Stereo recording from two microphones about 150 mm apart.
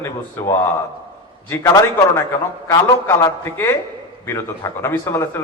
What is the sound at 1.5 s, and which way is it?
A man's voice, 20° left (ahead or behind).